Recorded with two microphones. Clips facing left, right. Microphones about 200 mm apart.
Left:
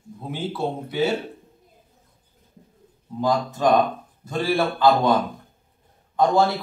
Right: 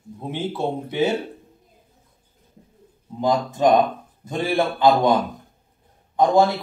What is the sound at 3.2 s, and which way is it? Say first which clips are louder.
Speech: right 2 dB; 20° right (ahead or behind).